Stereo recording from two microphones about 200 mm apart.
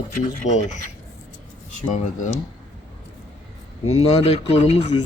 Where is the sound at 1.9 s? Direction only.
35° left (ahead or behind).